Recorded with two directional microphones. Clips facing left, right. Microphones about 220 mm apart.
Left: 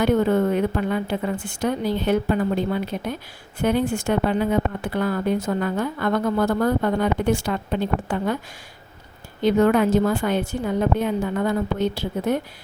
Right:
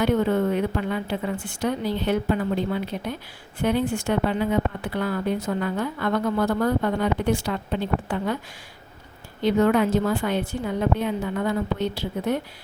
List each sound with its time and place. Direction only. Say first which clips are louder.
0.0 s speech: left 2 dB; 45° left (ahead or behind)
9.4 s speech: left 2 dB; 45° left (ahead or behind)